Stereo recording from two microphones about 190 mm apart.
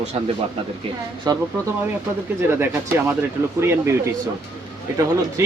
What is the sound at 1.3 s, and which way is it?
Speech, 20° right (ahead or behind).